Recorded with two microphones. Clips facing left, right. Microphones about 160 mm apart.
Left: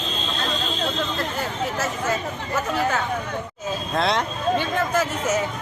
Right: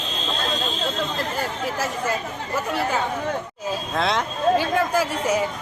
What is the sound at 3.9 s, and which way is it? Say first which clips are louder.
Speech: left 2 dB; centre (ahead or behind).